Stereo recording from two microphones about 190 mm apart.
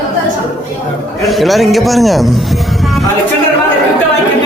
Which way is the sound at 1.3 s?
Centre (ahead or behind).